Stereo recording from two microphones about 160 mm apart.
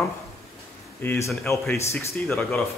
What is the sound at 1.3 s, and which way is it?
Speech, centre (ahead or behind).